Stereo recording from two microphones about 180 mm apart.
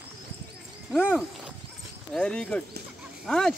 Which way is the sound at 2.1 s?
5° left (ahead or behind).